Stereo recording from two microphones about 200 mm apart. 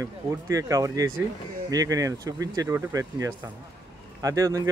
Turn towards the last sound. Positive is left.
turn(degrees=-15)  # may be behind; listen again after turning